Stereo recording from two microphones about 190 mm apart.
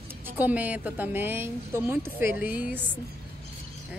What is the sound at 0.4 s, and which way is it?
A woman's voice, 10° right (ahead or behind).